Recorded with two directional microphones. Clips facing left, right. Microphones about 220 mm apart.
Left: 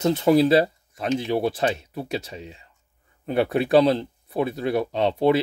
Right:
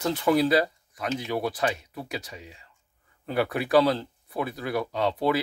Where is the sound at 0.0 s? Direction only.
25° left (ahead or behind).